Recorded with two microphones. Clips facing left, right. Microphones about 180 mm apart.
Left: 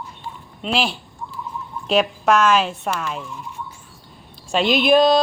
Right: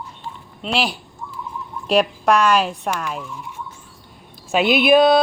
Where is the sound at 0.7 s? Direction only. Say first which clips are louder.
Even; 5° right (ahead or behind).